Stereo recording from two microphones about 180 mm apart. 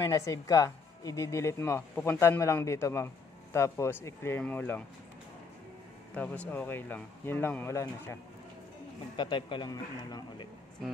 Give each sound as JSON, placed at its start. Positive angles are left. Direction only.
{"t": 0.0, "sound": "speech", "side_deg": 20}
{"t": 6.1, "sound": "speech", "side_deg": 10}
{"t": 9.1, "sound": "speech", "side_deg": 25}